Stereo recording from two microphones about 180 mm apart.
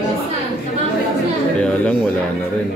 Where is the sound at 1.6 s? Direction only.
5° left (ahead or behind).